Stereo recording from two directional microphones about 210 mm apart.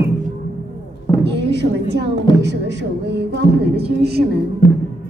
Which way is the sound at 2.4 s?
55° right (ahead or behind).